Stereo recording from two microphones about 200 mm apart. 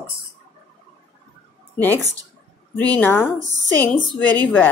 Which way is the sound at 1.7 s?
10° left (ahead or behind).